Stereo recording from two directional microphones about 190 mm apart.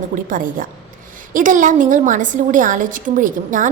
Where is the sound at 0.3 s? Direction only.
45° right (ahead or behind).